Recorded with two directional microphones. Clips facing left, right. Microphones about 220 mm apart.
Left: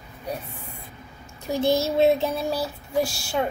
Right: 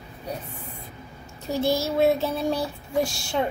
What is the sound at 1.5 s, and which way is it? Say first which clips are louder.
Child singing: left 2 dB; 15° left (ahead or behind).